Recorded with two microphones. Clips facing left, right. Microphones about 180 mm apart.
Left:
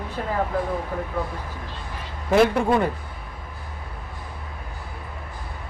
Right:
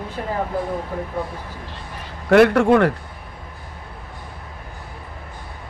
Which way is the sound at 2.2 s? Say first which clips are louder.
Right 5 dB; 70° right (ahead or behind).